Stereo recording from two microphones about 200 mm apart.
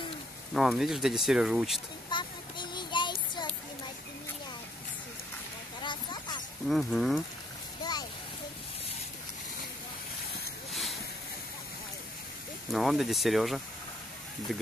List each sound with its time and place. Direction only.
0.6 s speech: centre (ahead or behind)
2.0 s child singing: 25° left (ahead or behind)
5.8 s a sound: 20° left (ahead or behind)
6.7 s speech: centre (ahead or behind)
10.7 s vehicle: centre (ahead or behind)
12.7 s speech: centre (ahead or behind)